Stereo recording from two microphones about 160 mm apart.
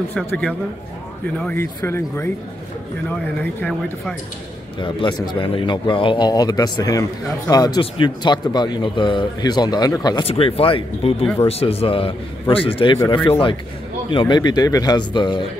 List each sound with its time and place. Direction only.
1.4 s speech: 15° left (ahead or behind)
4.7 s speech: 30° left (ahead or behind)
10.2 s speech: 35° left (ahead or behind)